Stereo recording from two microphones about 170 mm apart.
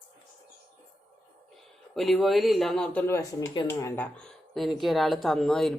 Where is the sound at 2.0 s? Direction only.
Centre (ahead or behind).